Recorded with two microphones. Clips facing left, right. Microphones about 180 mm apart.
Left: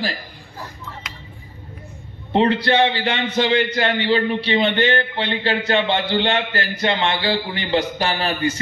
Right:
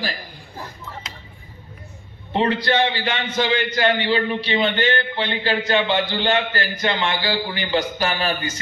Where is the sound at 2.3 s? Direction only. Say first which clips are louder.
Left 3 dB; 30° left (ahead or behind).